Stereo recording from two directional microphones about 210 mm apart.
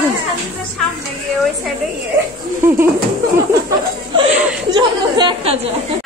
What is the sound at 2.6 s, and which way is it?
Speech, 10° right (ahead or behind).